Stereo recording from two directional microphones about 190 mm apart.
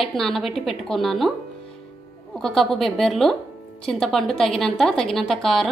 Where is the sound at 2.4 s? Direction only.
Centre (ahead or behind).